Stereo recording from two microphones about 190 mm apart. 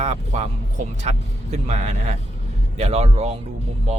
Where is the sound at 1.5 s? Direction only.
35° right (ahead or behind).